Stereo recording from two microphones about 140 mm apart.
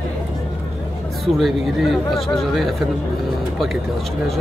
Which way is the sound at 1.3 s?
Centre (ahead or behind).